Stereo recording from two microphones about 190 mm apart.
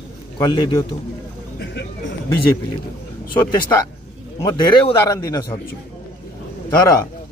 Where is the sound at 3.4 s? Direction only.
15° left (ahead or behind).